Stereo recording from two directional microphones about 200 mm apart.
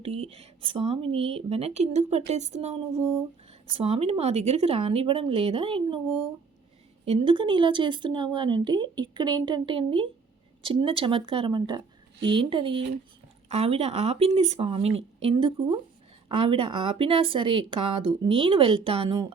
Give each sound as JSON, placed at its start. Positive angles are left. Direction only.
{"t": 0.0, "sound": "speech", "side_deg": -30}
{"t": 3.0, "sound": "a sound", "side_deg": -10}
{"t": 3.7, "sound": "speech", "side_deg": -30}